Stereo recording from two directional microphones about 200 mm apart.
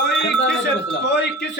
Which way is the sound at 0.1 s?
60° left (ahead or behind).